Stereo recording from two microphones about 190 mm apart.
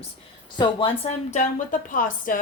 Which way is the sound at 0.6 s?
25° left (ahead or behind).